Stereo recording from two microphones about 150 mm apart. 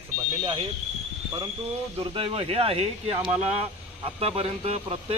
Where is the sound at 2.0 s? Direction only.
40° right (ahead or behind).